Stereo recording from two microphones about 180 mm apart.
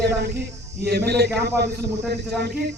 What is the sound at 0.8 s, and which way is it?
A man's voice, 65° right (ahead or behind).